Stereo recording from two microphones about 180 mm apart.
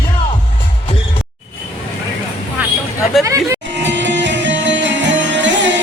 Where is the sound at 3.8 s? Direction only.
85° right.